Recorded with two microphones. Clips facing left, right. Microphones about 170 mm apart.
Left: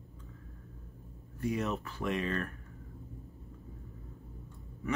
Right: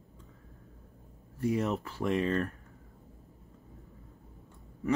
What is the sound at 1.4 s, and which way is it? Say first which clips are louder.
Speech: right 3 dB; 30° right (ahead or behind).